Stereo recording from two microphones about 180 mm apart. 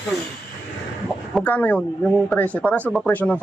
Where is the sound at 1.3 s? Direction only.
10° left (ahead or behind).